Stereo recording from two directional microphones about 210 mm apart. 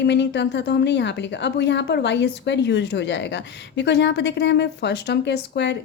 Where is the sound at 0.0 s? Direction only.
55° left (ahead or behind).